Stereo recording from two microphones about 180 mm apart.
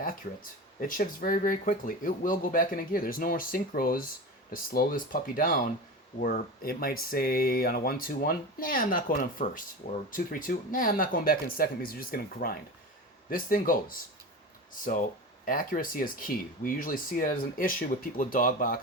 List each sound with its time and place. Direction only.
0.8 s speech: 50° left (ahead or behind)
15.4 s speech: 50° left (ahead or behind)